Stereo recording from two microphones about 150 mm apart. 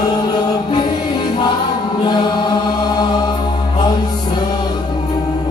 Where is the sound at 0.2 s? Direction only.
30° left (ahead or behind).